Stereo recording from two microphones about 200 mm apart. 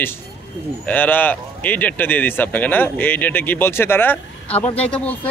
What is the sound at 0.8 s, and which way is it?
Speech, 10° left (ahead or behind).